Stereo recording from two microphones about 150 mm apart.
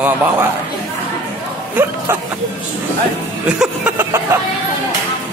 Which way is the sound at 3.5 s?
10° right (ahead or behind).